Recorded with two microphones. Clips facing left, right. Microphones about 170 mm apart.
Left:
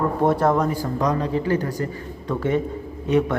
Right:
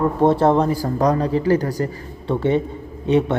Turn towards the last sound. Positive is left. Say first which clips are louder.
# right 2 dB
turn(degrees=-25)  # may be behind; listen again after turning